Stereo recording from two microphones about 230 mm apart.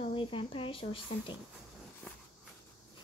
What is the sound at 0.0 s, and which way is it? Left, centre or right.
Speech, left.